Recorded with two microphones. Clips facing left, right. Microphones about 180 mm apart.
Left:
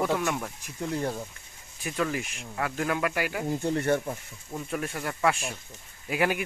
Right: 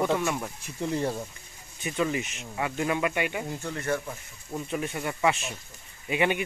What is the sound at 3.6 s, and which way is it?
Speech, 25° left (ahead or behind).